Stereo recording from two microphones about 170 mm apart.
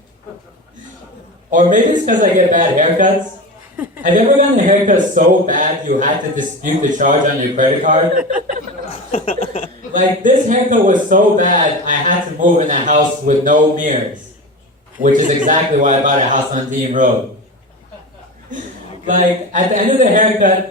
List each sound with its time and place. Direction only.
1.5 s a man's voice: 50° right (ahead or behind)
8.9 s a sound: 40° left (ahead or behind)
9.9 s a man's voice: 50° right (ahead or behind)
15.0 s a man's voice: 50° right (ahead or behind)
19.0 s a man's voice: 50° right (ahead or behind)